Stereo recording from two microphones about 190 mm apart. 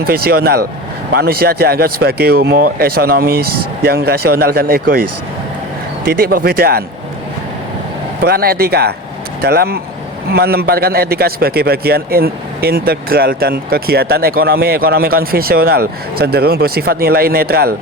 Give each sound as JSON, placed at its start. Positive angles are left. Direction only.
{"t": 0.0, "sound": "a man's voice", "side_deg": -55}
{"t": 6.1, "sound": "a man's voice", "side_deg": -50}
{"t": 8.2, "sound": "a man's voice", "side_deg": -55}